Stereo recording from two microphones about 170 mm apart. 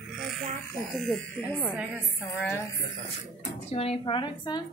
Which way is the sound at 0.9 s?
Centre (ahead or behind).